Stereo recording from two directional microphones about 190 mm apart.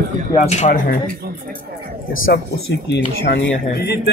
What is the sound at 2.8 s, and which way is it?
Speech, 65° left (ahead or behind).